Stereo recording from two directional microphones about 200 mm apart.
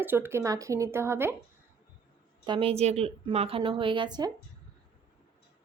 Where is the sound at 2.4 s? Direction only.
25° right (ahead or behind).